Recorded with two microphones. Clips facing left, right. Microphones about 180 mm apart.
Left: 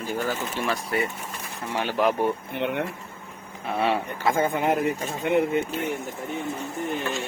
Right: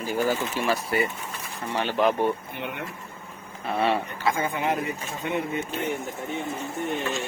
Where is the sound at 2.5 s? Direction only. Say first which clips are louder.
Left 7 dB; 60° left (ahead or behind).